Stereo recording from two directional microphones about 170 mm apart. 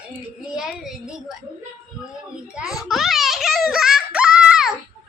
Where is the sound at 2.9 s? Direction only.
Centre (ahead or behind).